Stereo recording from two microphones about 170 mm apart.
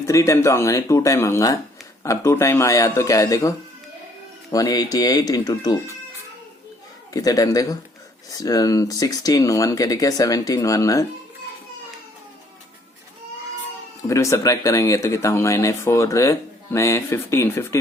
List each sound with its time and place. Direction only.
0.0 s speech: 20° left (ahead or behind)
4.5 s speech: 20° left (ahead or behind)
7.1 s speech: 20° left (ahead or behind)
14.1 s speech: 20° left (ahead or behind)